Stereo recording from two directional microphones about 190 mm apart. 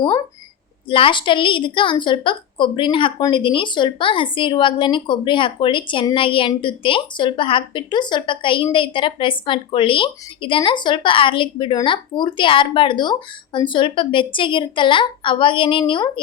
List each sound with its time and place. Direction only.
0.9 s a woman's voice: 25° left (ahead or behind)